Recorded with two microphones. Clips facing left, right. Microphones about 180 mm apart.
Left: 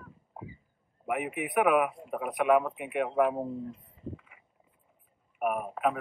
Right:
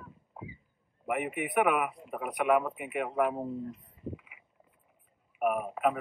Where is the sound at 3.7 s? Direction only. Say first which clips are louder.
Even; 25° left (ahead or behind).